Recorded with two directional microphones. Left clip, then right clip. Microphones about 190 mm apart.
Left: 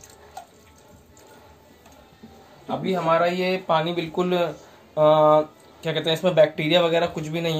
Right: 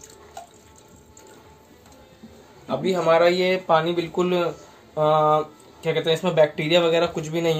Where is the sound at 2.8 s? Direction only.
35° right (ahead or behind).